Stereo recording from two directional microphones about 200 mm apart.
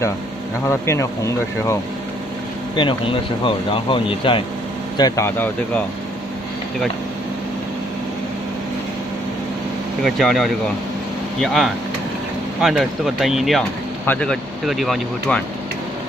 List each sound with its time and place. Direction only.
0.7 s speech: 15° left (ahead or behind)
10.0 s speech: centre (ahead or behind)